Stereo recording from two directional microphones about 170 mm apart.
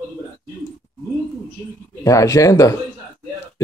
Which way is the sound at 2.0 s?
20° left (ahead or behind).